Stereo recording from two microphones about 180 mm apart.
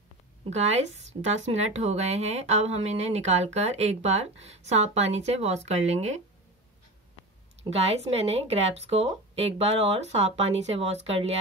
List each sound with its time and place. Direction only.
0.5 s a woman's voice: 40° right (ahead or behind)
7.7 s a woman's voice: 35° right (ahead or behind)